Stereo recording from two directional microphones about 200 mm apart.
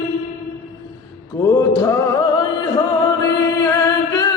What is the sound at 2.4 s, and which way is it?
Music, 25° left (ahead or behind).